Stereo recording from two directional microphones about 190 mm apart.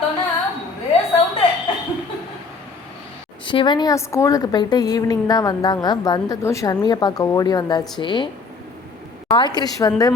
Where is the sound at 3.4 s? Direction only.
25° left (ahead or behind).